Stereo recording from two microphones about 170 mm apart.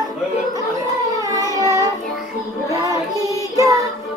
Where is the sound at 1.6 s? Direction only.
20° right (ahead or behind).